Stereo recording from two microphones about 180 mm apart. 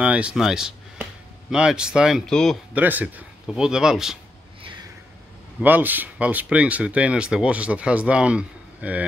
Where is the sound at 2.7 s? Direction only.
10° right (ahead or behind).